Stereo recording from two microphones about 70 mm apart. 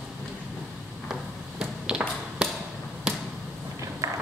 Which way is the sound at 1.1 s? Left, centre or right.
Centre.